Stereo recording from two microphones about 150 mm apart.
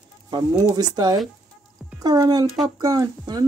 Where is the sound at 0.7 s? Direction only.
25° right (ahead or behind).